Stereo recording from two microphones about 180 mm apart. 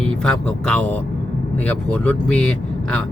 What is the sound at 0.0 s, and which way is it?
Speech, 5° left (ahead or behind).